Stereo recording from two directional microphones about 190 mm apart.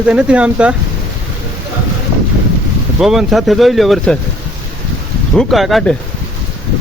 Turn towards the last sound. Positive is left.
turn(degrees=0)  # may be behind; listen again after turning